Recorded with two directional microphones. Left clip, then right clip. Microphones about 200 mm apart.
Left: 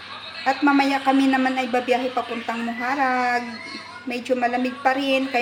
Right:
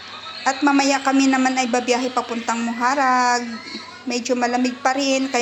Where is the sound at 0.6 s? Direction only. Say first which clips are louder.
Right 1 dB; 15° right (ahead or behind).